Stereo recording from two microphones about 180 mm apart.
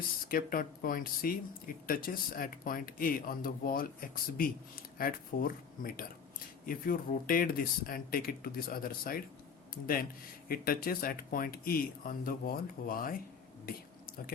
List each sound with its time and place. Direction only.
0.3 s speech: 50° left (ahead or behind)
13.7 s whispering: 55° left (ahead or behind)